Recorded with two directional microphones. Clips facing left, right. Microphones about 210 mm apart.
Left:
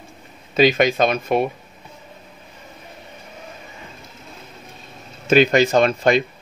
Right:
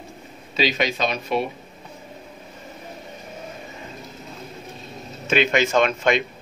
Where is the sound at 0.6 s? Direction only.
50° left (ahead or behind).